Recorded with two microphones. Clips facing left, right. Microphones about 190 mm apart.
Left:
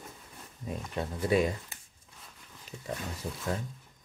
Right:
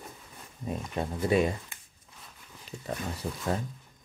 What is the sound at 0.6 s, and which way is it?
Speech, 25° right (ahead or behind).